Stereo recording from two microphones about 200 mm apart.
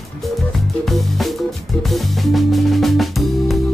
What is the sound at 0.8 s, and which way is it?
Music, centre (ahead or behind).